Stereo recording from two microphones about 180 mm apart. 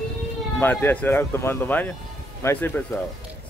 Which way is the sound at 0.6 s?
10° left (ahead or behind).